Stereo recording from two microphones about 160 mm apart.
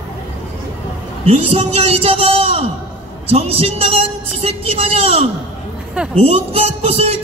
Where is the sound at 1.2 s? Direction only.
40° right (ahead or behind).